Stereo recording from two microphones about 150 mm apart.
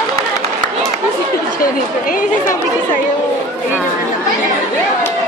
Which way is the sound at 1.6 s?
65° left (ahead or behind).